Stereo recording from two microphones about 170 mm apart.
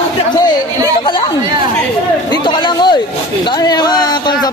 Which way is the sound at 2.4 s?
25° left (ahead or behind).